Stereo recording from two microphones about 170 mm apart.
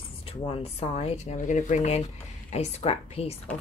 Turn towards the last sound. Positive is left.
turn(degrees=35)  # may be behind; listen again after turning